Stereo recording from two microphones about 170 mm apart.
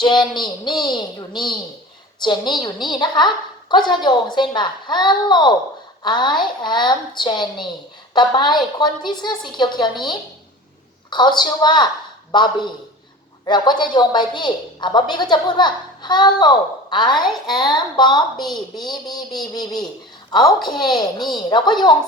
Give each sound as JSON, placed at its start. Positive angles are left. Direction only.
{"t": 0.0, "sound": "a woman's voice", "side_deg": 25}
{"t": 18.4, "sound": "a woman's voice", "side_deg": 0}
{"t": 18.8, "sound": "a woman's voice", "side_deg": 25}
{"t": 20.7, "sound": "a woman's voice", "side_deg": 0}
{"t": 21.3, "sound": "a woman's voice", "side_deg": 25}